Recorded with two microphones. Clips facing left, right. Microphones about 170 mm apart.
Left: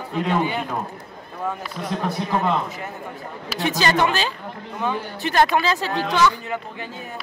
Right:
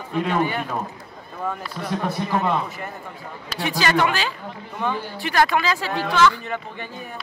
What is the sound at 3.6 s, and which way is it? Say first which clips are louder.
Speech: left 1 dB; 20° left (ahead or behind).